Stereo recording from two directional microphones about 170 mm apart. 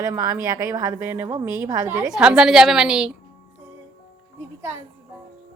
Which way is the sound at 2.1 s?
5° right (ahead or behind).